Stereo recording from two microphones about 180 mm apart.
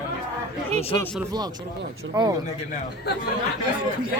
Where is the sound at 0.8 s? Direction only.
30° left (ahead or behind).